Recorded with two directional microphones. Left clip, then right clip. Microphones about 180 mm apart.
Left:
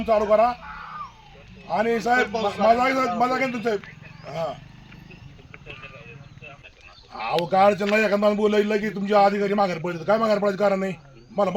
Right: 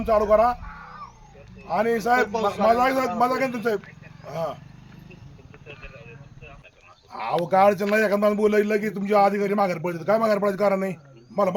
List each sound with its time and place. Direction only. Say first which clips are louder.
0.0 s a man's voice: even; 5° right (ahead or behind)
1.6 s a man's voice: even; 5° right (ahead or behind)
7.1 s a man's voice: even; 5° right (ahead or behind)